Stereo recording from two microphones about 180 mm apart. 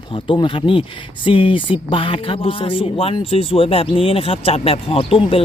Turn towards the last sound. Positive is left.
turn(degrees=30)  # may be behind; listen again after turning